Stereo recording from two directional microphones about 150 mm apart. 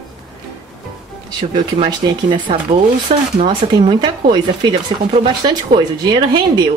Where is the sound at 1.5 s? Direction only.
30° right (ahead or behind).